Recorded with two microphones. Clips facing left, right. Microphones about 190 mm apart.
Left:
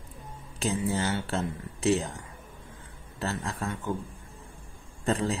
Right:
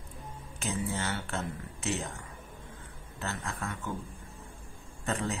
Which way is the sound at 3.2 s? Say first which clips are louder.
Left 5 dB; 35° left (ahead or behind).